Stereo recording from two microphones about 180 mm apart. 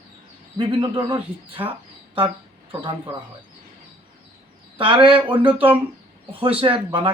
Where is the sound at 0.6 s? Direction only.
25° right (ahead or behind).